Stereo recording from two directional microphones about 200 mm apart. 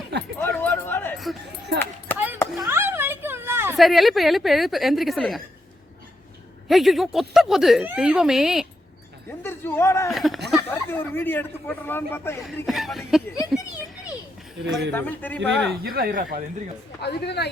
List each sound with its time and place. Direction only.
0.3 s a sound: 10° left (ahead or behind)
2.6 s a sound: 10° right (ahead or behind)
3.8 s speech: centre (ahead or behind)
6.7 s speech: centre (ahead or behind)
9.4 s a man's voice: 10° left (ahead or behind)
10.1 s a man's voice: centre (ahead or behind)
12.6 s speech: centre (ahead or behind)
14.7 s a man's voice: 10° left (ahead or behind)
15.4 s speech: 55° right (ahead or behind)
17.0 s speech: 55° left (ahead or behind)